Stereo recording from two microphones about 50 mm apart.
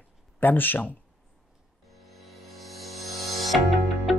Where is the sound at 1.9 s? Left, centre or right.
Centre.